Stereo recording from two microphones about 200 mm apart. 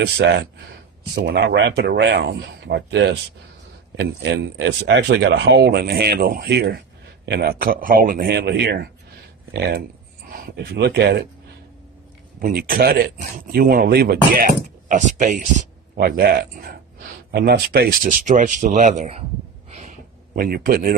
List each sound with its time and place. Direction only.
0.0 s speech: 55° right (ahead or behind)
12.4 s speech: 45° right (ahead or behind)
19.7 s a sound: 35° right (ahead or behind)